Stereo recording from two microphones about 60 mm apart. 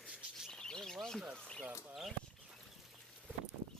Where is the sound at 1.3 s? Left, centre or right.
Centre.